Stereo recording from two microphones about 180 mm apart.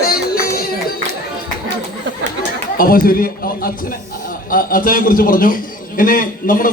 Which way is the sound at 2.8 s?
55° left (ahead or behind).